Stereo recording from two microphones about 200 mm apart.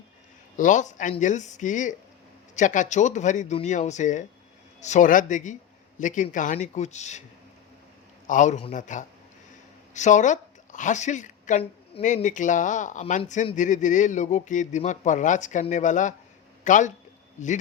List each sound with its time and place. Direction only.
0.5 s speech: 40° left (ahead or behind)
8.3 s speech: 35° left (ahead or behind)